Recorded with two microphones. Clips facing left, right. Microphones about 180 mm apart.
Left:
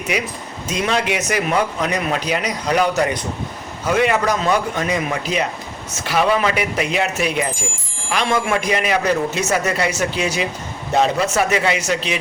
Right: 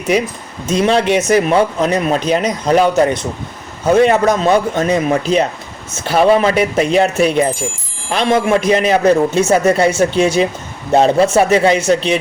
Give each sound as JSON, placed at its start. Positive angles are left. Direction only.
{"t": 0.7, "sound": "a man's voice", "side_deg": -30}